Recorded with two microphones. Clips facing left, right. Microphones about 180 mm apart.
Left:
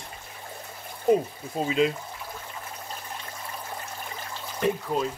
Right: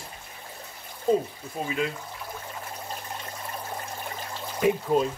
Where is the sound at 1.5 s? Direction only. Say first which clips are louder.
Left 5 dB; 25° left (ahead or behind).